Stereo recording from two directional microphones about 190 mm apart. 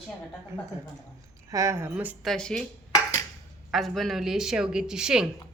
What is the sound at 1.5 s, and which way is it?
Speech, 15° right (ahead or behind).